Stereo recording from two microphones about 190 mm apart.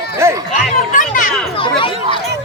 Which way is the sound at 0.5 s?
45° left (ahead or behind).